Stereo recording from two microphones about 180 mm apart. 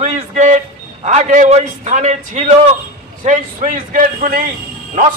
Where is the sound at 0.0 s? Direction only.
40° right (ahead or behind).